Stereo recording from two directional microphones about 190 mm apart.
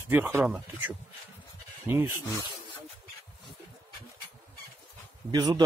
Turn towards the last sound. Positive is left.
turn(degrees=-20)  # may be behind; listen again after turning